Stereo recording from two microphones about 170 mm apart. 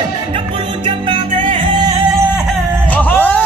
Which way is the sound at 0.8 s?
30° right (ahead or behind).